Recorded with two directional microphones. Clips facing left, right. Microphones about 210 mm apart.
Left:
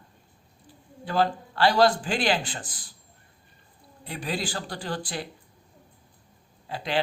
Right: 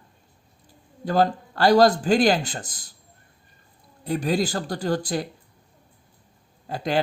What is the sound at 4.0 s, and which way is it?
Speech, 40° right (ahead or behind).